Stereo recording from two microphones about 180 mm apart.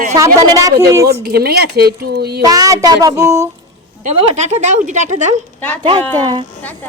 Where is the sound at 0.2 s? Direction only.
20° right (ahead or behind).